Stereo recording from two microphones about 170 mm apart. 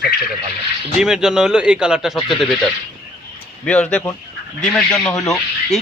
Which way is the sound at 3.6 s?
5° left (ahead or behind).